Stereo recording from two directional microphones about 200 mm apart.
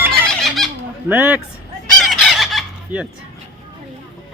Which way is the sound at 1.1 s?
10° right (ahead or behind).